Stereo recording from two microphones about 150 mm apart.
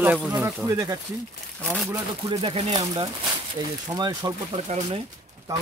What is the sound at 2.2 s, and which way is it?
Speech, 35° right (ahead or behind).